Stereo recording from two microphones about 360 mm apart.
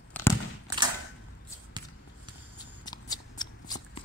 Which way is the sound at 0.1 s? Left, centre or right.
Centre.